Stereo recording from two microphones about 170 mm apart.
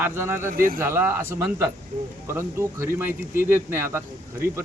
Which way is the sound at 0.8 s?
15° right (ahead or behind).